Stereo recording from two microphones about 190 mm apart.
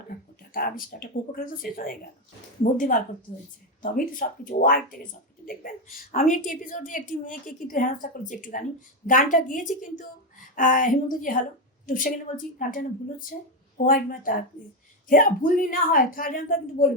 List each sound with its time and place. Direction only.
0.5 s a woman's voice: 50° left (ahead or behind)